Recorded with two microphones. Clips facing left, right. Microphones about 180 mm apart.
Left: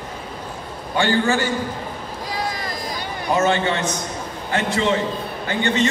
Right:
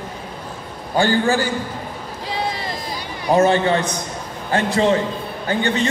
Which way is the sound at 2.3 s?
25° right (ahead or behind).